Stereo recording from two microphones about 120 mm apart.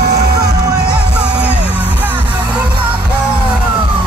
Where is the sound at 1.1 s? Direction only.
10° right (ahead or behind).